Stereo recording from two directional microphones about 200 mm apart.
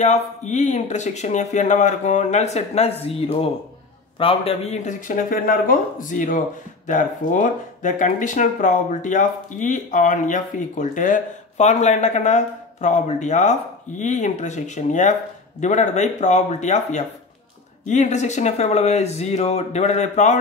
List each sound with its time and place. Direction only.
0.0 s speech: 35° left (ahead or behind)